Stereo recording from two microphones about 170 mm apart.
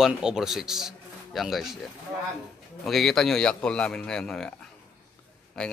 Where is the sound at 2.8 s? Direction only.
Centre (ahead or behind).